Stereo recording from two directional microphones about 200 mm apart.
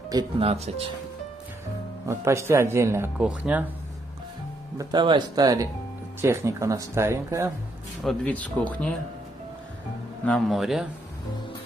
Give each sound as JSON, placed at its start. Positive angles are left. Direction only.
{"t": 0.1, "sound": "speech", "side_deg": -30}
{"t": 2.0, "sound": "speech", "side_deg": -15}
{"t": 4.7, "sound": "speech", "side_deg": -25}
{"t": 8.0, "sound": "speech", "side_deg": 0}
{"t": 10.2, "sound": "speech", "side_deg": 0}